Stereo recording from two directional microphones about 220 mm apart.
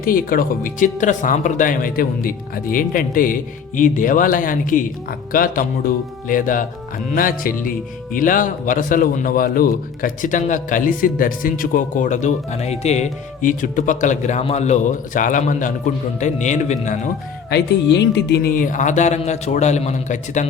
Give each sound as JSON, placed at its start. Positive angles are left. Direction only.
{"t": 0.0, "sound": "speech", "side_deg": 40}
{"t": 17.5, "sound": "speech", "side_deg": 50}